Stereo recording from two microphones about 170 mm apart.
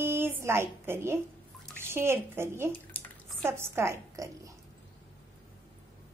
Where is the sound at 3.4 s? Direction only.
15° right (ahead or behind).